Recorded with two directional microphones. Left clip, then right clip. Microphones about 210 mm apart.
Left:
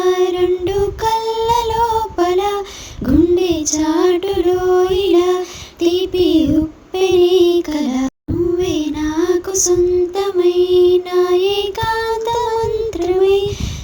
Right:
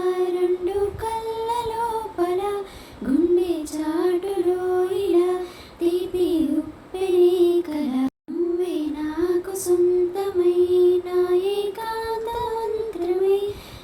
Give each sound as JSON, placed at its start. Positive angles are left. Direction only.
{"t": 0.0, "sound": "music", "side_deg": 40}
{"t": 3.1, "sound": "female singing", "side_deg": 45}
{"t": 6.9, "sound": "music", "side_deg": 45}
{"t": 8.5, "sound": "child singing", "side_deg": 40}
{"t": 10.2, "sound": "music", "side_deg": 45}